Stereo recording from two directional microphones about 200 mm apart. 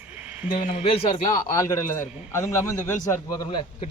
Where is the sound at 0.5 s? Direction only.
40° left (ahead or behind).